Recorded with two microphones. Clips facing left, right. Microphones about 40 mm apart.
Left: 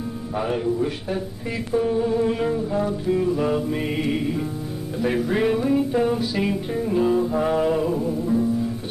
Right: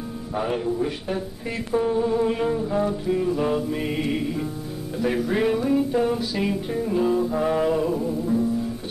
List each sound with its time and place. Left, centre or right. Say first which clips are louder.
0.7 s mantra: left 1 dB; centre
3.5 s music: left 1 dB; centre